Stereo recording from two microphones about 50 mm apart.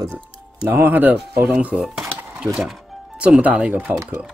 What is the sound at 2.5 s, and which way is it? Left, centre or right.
Speech, centre.